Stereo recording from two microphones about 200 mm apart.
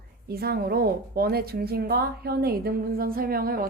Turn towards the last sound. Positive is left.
turn(degrees=-45)  # may be behind; listen again after turning